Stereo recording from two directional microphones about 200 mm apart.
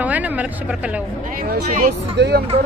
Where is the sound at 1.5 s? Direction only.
40° right (ahead or behind).